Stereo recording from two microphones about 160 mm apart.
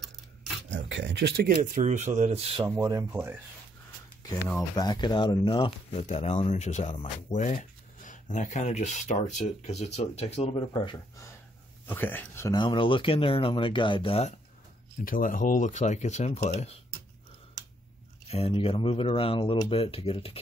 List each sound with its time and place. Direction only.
0.7 s speech: 90° right
1.8 s speech: 45° right (ahead or behind)
2.7 s speech: 20° right (ahead or behind)
4.7 s speech: 25° left (ahead or behind)
11.9 s speech: 10° left (ahead or behind)
12.5 s speech: 30° left (ahead or behind)
15.0 s speech: 60° left (ahead or behind); by 16.8 s 45° left (ahead or behind)
18.3 s speech: 35° left (ahead or behind)